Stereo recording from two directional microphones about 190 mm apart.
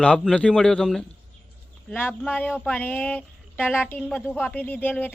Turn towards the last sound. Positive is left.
turn(degrees=10)  # may be behind; listen again after turning